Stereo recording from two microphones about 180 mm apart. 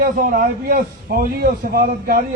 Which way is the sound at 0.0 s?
50° right (ahead or behind).